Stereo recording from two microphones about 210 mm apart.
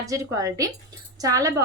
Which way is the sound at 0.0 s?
15° right (ahead or behind).